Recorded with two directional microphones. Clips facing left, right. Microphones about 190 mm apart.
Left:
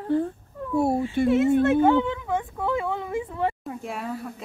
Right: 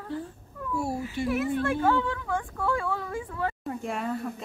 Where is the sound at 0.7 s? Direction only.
60° left (ahead or behind).